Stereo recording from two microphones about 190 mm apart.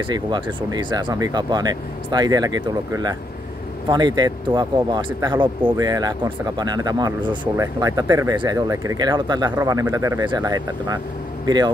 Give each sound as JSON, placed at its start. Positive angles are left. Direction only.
{"t": 0.0, "sound": "speech", "side_deg": -25}